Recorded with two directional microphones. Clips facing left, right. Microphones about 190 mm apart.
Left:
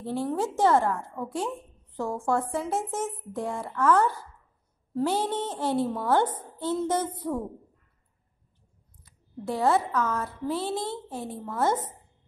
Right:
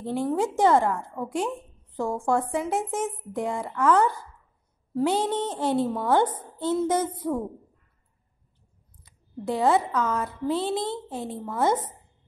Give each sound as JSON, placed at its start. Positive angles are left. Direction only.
{"t": 0.0, "sound": "speech", "side_deg": -15}
{"t": 9.0, "sound": "a woman's voice", "side_deg": -20}